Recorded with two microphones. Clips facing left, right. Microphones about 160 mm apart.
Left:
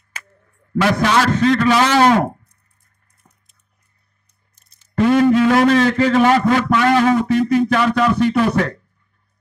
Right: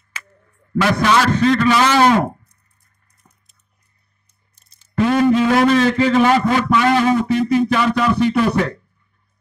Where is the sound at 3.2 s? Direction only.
50° left (ahead or behind).